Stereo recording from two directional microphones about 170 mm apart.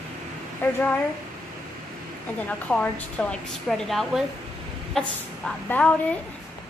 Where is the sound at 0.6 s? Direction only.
10° left (ahead or behind).